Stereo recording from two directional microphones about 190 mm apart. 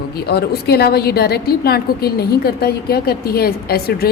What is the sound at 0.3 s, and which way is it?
A woman's voice, 55° left (ahead or behind).